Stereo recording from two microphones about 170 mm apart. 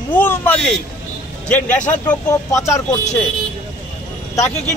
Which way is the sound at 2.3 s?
20° left (ahead or behind).